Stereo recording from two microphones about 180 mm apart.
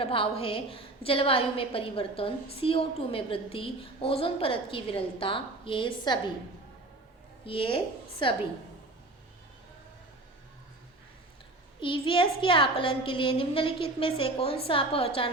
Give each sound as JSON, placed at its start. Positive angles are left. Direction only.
{"t": 0.0, "sound": "a woman's voice", "side_deg": 30}
{"t": 7.4, "sound": "a woman's voice", "side_deg": 30}
{"t": 11.8, "sound": "a woman's voice", "side_deg": 30}